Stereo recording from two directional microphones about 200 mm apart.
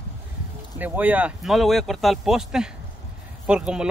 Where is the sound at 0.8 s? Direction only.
10° right (ahead or behind).